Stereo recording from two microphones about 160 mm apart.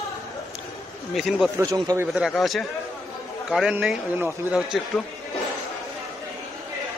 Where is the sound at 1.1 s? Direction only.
Centre (ahead or behind).